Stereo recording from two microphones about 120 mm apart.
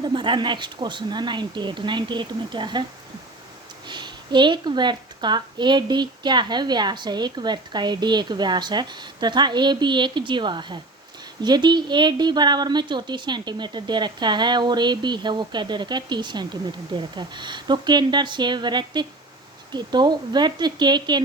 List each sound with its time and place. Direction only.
0.0 s a woman's voice: 40° right (ahead or behind)
3.8 s a woman's voice: 40° right (ahead or behind)